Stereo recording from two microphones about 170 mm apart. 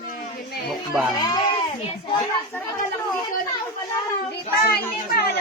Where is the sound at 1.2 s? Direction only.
25° left (ahead or behind).